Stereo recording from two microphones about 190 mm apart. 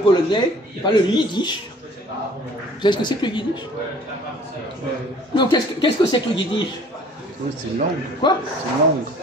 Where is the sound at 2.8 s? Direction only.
25° left (ahead or behind).